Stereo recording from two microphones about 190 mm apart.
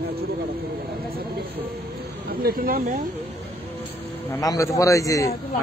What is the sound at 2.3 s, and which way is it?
Speech, 50° right (ahead or behind).